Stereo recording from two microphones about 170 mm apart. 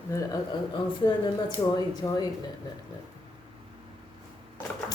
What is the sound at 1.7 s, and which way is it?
Speech, 25° left (ahead or behind).